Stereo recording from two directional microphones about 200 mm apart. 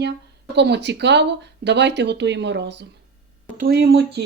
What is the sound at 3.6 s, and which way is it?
Speech, 50° right (ahead or behind).